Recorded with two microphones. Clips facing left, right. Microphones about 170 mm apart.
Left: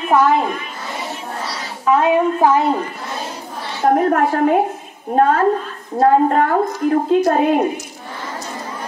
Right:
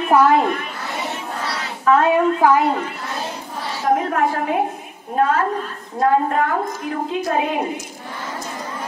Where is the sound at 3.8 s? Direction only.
45° left (ahead or behind).